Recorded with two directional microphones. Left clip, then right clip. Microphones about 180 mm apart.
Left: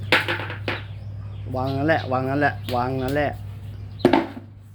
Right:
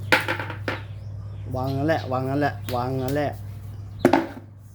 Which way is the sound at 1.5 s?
5° right (ahead or behind).